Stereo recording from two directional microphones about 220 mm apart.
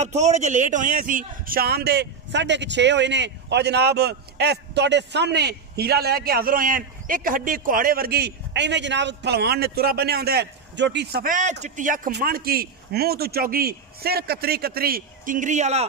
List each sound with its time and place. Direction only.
0.0 s a man's voice: 30° right (ahead or behind)